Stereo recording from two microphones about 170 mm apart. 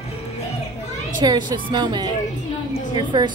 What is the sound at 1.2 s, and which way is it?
A woman's voice, 25° right (ahead or behind).